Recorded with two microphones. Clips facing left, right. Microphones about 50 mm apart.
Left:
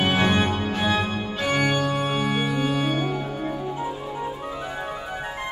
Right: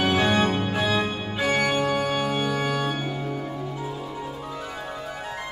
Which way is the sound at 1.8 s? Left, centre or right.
Right.